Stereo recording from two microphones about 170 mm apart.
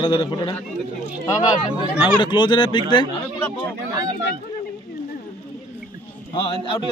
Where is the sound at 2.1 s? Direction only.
25° left (ahead or behind).